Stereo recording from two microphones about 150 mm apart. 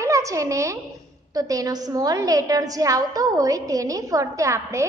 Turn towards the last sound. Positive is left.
turn(degrees=-20)  # may be behind; listen again after turning